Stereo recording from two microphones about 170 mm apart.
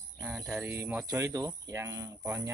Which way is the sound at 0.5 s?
10° right (ahead or behind).